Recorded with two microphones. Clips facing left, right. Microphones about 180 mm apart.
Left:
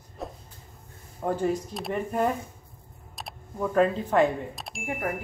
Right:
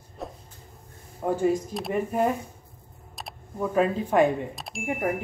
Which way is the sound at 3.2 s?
5° right (ahead or behind).